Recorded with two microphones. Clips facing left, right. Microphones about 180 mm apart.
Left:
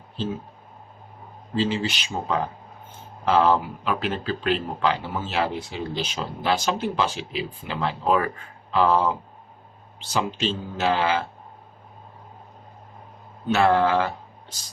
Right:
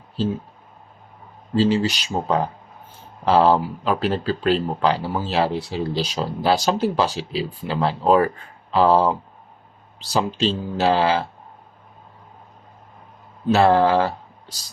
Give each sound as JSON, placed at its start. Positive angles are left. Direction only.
{"t": 1.5, "sound": "speech", "side_deg": -40}
{"t": 13.5, "sound": "speech", "side_deg": -35}